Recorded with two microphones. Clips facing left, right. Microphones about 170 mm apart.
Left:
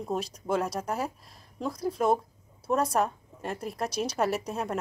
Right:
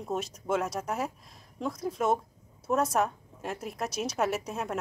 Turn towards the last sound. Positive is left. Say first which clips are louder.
# left 1 dB
turn(degrees=0)  # may be behind; listen again after turning